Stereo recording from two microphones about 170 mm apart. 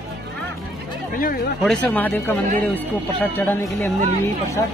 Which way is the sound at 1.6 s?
5° left (ahead or behind).